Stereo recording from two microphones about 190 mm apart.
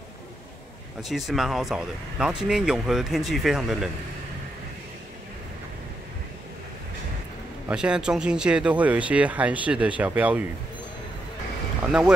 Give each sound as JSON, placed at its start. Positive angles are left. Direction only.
{"t": 1.0, "sound": "speech", "side_deg": 0}
{"t": 7.6, "sound": "speech", "side_deg": -5}